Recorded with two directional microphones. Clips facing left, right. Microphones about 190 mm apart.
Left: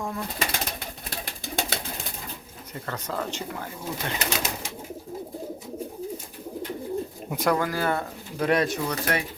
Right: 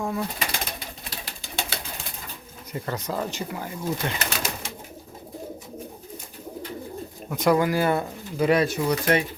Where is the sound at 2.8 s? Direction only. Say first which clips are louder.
Right 2 dB; 15° right (ahead or behind).